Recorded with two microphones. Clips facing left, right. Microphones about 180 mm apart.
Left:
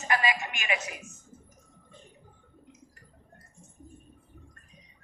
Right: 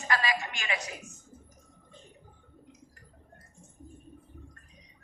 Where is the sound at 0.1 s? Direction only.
15° left (ahead or behind).